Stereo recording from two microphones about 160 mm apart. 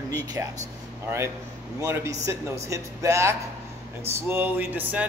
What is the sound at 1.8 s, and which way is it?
Speech, 20° right (ahead or behind).